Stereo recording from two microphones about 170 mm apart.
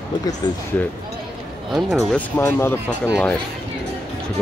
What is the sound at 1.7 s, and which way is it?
Speech, centre (ahead or behind).